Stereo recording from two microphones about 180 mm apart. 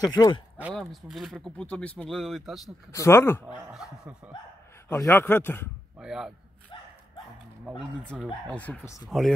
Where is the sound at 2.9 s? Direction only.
15° left (ahead or behind).